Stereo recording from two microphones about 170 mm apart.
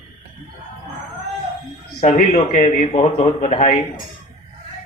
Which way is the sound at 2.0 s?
40° left (ahead or behind).